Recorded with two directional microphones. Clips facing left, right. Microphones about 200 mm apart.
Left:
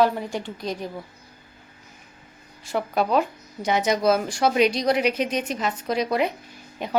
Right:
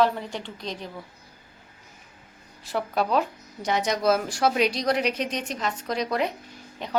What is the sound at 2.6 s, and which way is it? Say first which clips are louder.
Speech: left 2 dB; centre (ahead or behind).